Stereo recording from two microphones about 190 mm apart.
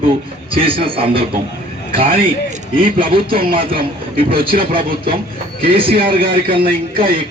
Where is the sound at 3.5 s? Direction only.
30° right (ahead or behind).